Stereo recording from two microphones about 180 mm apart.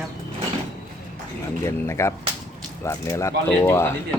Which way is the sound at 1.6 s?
15° left (ahead or behind).